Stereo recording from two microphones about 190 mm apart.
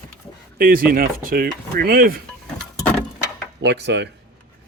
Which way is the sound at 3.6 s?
65° right (ahead or behind).